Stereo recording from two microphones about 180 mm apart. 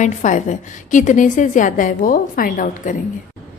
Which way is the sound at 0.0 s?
45° left (ahead or behind).